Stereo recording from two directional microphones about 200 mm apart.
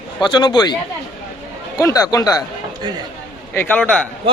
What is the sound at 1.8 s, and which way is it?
Speech, 15° left (ahead or behind).